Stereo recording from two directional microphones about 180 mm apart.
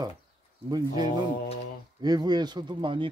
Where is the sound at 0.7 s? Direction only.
20° right (ahead or behind).